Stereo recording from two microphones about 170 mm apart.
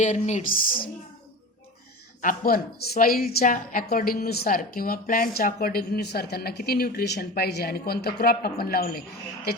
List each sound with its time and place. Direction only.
0.0 s speech: 45° left (ahead or behind)
2.2 s a woman's voice: 60° left (ahead or behind)